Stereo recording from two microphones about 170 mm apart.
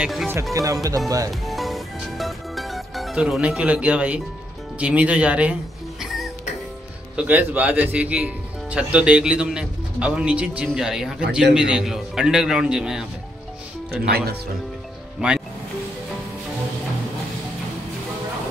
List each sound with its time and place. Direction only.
0.0 s speech: centre (ahead or behind)
0.3 s speech: 20° right (ahead or behind)
1.4 s music: centre (ahead or behind)
4.7 s a man's voice: 10° right (ahead or behind)
14.0 s speech: 65° right (ahead or behind)
15.1 s speech: 5° right (ahead or behind)